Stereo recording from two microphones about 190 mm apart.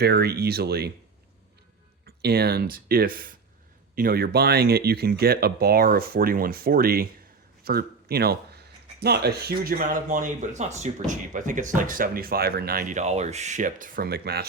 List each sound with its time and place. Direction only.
0.0 s speech: 55° right (ahead or behind)
2.0 s speech: 55° right (ahead or behind)